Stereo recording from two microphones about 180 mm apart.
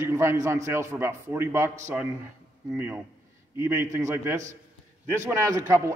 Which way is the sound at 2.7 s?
10° right (ahead or behind).